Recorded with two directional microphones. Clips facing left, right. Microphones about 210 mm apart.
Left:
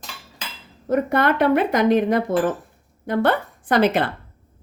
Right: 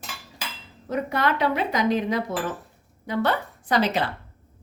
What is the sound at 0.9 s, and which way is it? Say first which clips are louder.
Speech: left 6 dB; 55° left (ahead or behind).